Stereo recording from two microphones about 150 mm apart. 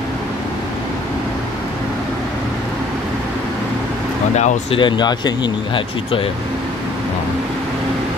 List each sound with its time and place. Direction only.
4.6 s speech: 35° left (ahead or behind)